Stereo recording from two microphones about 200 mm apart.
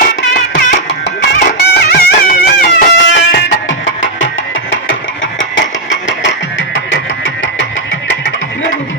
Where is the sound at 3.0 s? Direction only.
65° left (ahead or behind).